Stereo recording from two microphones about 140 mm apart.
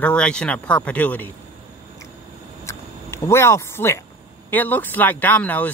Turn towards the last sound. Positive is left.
turn(degrees=10)  # may be behind; listen again after turning